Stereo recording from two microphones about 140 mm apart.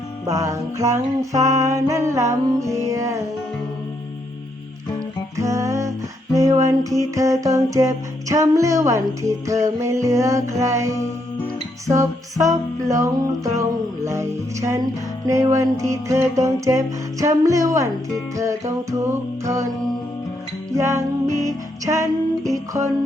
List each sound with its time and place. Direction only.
0.3 s music: 25° right (ahead or behind)
5.4 s music: 20° right (ahead or behind)
20.7 s music: 20° right (ahead or behind)